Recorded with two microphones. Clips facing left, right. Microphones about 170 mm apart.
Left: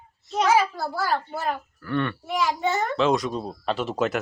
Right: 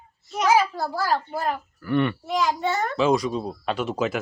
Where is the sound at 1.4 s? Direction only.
10° right (ahead or behind).